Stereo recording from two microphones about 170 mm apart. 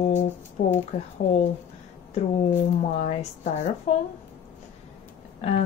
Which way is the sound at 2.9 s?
40° left (ahead or behind).